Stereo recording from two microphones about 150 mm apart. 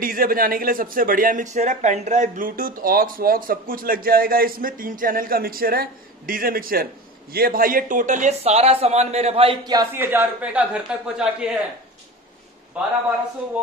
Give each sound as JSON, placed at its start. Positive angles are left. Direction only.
{"t": 0.0, "sound": "a man's voice", "side_deg": -70}
{"t": 9.9, "sound": "a man's voice", "side_deg": -15}
{"t": 12.7, "sound": "a man's voice", "side_deg": -5}